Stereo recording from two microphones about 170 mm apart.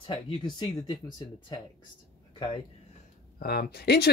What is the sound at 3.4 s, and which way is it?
Speech, 65° left (ahead or behind).